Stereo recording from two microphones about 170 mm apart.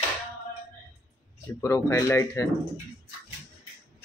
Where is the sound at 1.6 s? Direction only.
15° left (ahead or behind).